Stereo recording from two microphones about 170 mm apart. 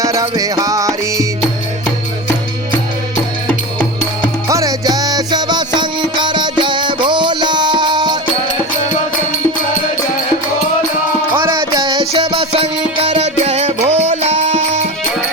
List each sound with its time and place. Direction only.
0.0 s music: 20° right (ahead or behind)
4.4 s music: 20° right (ahead or behind)
11.4 s music: 25° right (ahead or behind); by 14.8 s 40° right (ahead or behind)